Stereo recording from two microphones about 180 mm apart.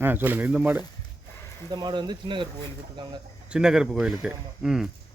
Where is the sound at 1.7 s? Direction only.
25° right (ahead or behind).